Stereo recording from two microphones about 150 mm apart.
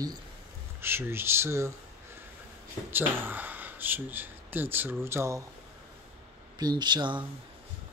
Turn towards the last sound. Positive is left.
turn(degrees=-30)  # may be behind; listen again after turning